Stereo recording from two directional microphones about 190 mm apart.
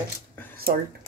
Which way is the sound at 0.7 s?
50° right (ahead or behind).